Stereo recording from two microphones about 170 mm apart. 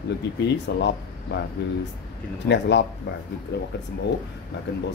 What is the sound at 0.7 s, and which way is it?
Speech, 85° left.